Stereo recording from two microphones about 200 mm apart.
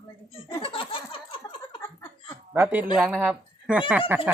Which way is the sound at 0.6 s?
25° left (ahead or behind).